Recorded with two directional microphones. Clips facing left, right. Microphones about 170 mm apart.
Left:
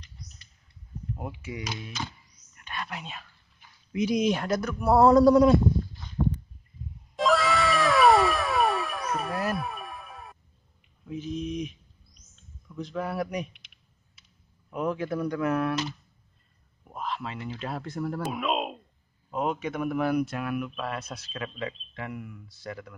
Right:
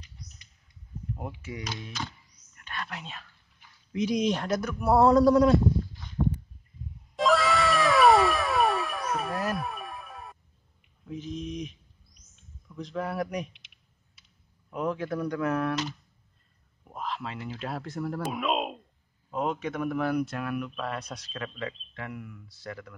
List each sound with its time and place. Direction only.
1.4 s speech: 10° left (ahead or behind)
2.5 s whispering: 15° left (ahead or behind)
3.9 s speech: 5° left (ahead or behind)
7.2 s cat: centre (ahead or behind)
11.1 s a sound: 5° left (ahead or behind)
12.6 s a man's voice: centre (ahead or behind)
14.7 s speech: 5° left (ahead or behind)
21.5 s speech: 15° left (ahead or behind)